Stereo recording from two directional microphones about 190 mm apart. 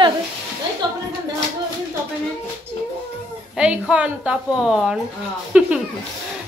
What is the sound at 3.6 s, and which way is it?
A woman's voice, 5° right (ahead or behind).